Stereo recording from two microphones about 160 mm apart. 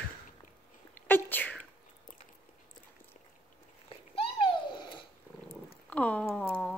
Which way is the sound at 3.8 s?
35° left (ahead or behind).